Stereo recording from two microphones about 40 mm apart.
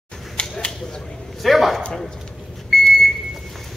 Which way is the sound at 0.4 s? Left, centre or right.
Left.